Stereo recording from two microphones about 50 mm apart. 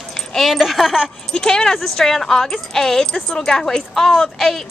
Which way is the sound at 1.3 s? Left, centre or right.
Centre.